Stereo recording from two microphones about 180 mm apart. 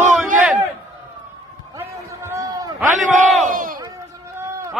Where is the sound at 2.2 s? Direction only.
15° right (ahead or behind).